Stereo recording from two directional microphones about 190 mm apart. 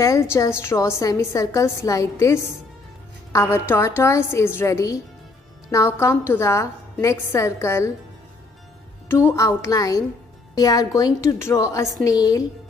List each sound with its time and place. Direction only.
0.0 s a woman's voice: 15° left (ahead or behind)
9.1 s a woman's voice: 15° left (ahead or behind)